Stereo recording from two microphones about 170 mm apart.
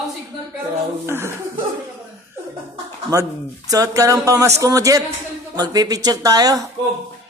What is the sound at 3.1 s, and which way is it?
Speech, 20° right (ahead or behind).